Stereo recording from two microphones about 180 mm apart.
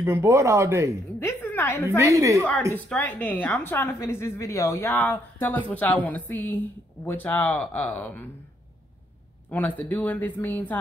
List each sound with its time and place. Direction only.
0.0 s speech: 15° right (ahead or behind)
1.2 s a sound: 10° left (ahead or behind)
1.9 s speech: 15° right (ahead or behind)
2.7 s a woman's voice: 10° left (ahead or behind)
9.5 s a woman's voice: 10° left (ahead or behind)